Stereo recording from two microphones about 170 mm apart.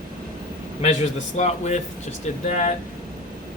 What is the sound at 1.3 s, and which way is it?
Speech, 45° left (ahead or behind).